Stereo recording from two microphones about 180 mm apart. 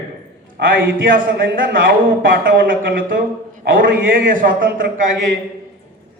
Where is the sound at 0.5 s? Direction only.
50° right (ahead or behind).